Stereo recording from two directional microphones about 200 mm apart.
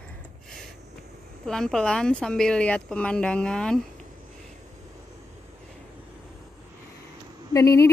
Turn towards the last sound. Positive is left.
turn(degrees=15)  # may be behind; listen again after turning